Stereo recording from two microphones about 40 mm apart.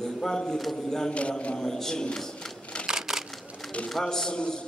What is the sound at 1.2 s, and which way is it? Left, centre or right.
Speech, left.